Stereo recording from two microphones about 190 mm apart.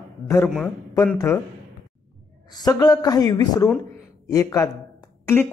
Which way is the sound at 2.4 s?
20° left (ahead or behind).